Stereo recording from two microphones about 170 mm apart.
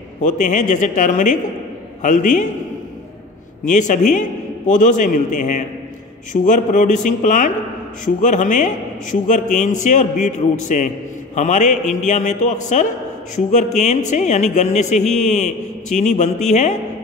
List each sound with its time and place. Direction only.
0.2 s speech: 50° left (ahead or behind)
3.6 s speech: 45° left (ahead or behind)